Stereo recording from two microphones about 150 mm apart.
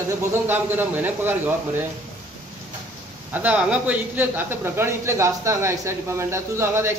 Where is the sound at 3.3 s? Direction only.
10° right (ahead or behind).